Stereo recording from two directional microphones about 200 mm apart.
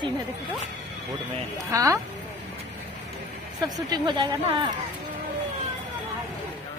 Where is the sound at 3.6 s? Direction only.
20° right (ahead or behind).